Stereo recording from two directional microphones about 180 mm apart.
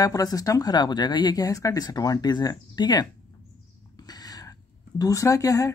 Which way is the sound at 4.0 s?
20° left (ahead or behind).